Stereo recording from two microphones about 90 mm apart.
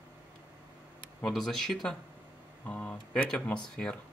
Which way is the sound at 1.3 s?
5° left (ahead or behind).